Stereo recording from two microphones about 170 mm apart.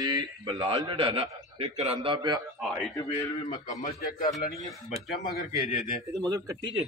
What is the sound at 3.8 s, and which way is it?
Speech, 50° left (ahead or behind).